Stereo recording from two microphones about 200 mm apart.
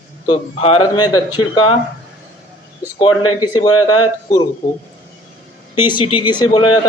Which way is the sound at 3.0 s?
25° left (ahead or behind).